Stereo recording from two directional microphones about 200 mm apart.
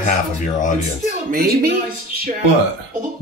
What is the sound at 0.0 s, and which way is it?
Speech, 40° left (ahead or behind).